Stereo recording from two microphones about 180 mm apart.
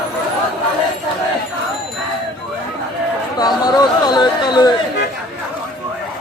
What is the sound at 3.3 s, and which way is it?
Chatter, 20° left (ahead or behind).